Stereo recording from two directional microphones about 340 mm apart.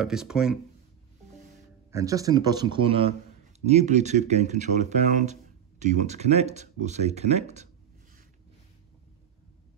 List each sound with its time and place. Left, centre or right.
0.0 s speech: centre
1.9 s a man's voice: centre